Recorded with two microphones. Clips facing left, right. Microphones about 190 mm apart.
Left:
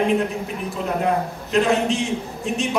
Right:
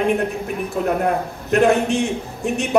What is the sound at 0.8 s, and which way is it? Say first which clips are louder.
A man's voice: right 2 dB; 55° right (ahead or behind).